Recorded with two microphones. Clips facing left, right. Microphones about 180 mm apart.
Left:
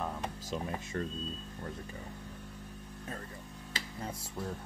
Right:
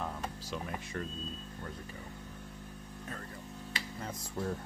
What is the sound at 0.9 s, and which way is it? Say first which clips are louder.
Speech: left 3 dB; 35° left (ahead or behind).